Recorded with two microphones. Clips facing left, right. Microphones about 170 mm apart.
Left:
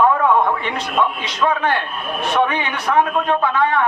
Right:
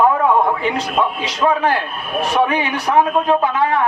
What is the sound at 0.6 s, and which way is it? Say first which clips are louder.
A man's voice: right 2 dB; 30° right (ahead or behind).